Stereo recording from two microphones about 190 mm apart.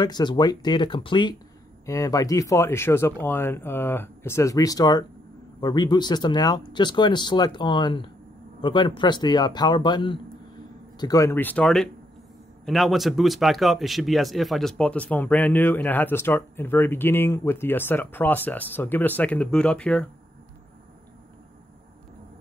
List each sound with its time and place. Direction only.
0.0 s speech: 20° left (ahead or behind); by 20.1 s 5° left (ahead or behind)